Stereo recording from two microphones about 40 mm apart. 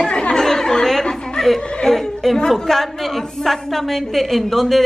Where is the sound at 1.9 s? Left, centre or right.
Centre.